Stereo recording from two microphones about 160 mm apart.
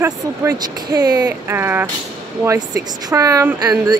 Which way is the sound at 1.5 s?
15° right (ahead or behind).